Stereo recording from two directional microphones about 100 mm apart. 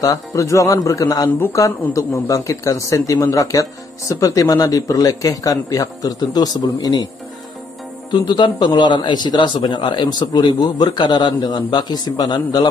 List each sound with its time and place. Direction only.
0.0 s a man's voice: 35° left (ahead or behind)
8.1 s a man's voice: 50° left (ahead or behind)